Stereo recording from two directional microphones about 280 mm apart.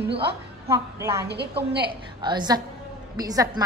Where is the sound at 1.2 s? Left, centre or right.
Right.